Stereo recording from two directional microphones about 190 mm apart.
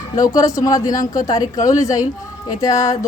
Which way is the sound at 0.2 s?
20° left (ahead or behind).